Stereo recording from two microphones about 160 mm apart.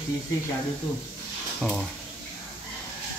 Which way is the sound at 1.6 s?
Centre (ahead or behind).